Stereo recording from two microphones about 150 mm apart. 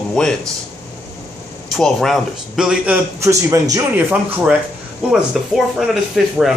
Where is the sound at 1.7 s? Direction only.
Centre (ahead or behind); by 4.0 s 20° right (ahead or behind).